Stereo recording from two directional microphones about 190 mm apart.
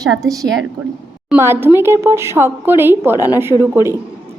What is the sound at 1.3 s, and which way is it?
A woman's voice, 10° right (ahead or behind).